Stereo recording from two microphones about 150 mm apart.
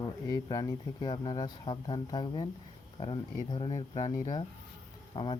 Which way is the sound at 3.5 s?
35° left (ahead or behind).